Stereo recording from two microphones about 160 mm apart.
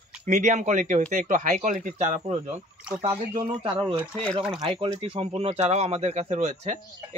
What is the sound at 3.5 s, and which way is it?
Speech, 35° right (ahead or behind).